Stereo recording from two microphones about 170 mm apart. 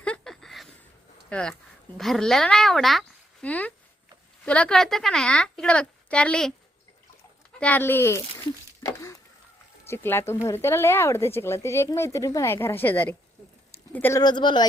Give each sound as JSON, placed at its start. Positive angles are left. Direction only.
{"t": 0.0, "sound": "a sound", "side_deg": 5}
{"t": 1.3, "sound": "a woman's voice", "side_deg": 5}
{"t": 7.6, "sound": "speech", "side_deg": 10}
{"t": 8.8, "sound": "a sound", "side_deg": 15}
{"t": 9.8, "sound": "speech", "side_deg": 15}
{"t": 14.2, "sound": "speech", "side_deg": 25}